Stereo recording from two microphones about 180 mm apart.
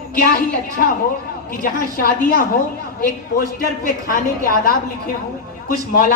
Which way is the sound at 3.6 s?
50° left (ahead or behind).